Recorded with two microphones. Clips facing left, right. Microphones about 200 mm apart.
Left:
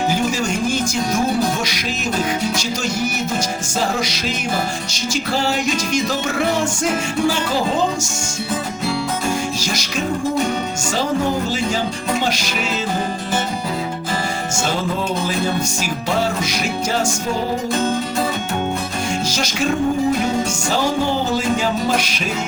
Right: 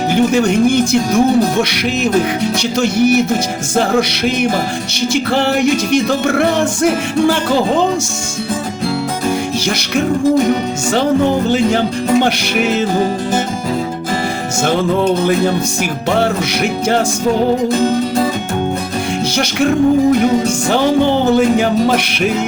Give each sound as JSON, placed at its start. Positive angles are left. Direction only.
{"t": 0.1, "sound": "music", "side_deg": -60}
{"t": 2.6, "sound": "music", "side_deg": -65}
{"t": 9.6, "sound": "music", "side_deg": -60}
{"t": 11.5, "sound": "music", "side_deg": -60}
{"t": 20.7, "sound": "music", "side_deg": -60}